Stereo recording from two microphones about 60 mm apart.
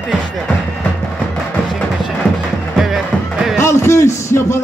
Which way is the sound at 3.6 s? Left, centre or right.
Left.